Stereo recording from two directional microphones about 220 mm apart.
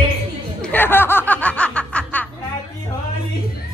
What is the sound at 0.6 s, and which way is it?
Snicker, 10° left (ahead or behind).